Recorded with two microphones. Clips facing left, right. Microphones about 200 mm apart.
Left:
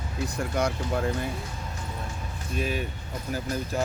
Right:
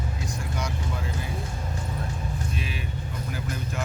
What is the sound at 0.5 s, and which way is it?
Speech, 55° left (ahead or behind).